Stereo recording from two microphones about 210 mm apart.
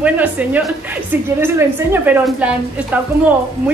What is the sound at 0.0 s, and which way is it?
A woman's voice, 5° right (ahead or behind).